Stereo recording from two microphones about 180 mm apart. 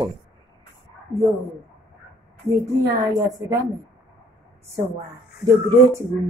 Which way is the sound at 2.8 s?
20° right (ahead or behind).